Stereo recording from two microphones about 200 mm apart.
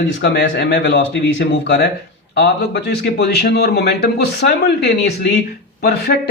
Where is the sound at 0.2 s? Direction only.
60° left (ahead or behind).